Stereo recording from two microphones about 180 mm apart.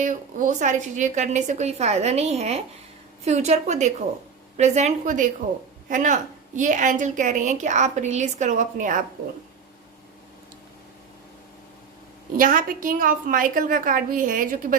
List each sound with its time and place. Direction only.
0.0 s a woman's voice: 45° right (ahead or behind)
12.4 s a woman's voice: 50° right (ahead or behind)